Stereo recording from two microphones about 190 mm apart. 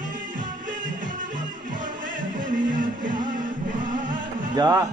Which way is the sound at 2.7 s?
45° right (ahead or behind).